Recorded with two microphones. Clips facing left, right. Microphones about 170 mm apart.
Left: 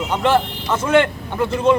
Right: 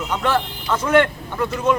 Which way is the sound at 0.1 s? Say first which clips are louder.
Left 4 dB; 25° left (ahead or behind).